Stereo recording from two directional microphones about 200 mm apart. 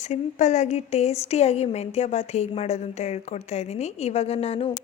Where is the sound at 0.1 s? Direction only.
35° left (ahead or behind).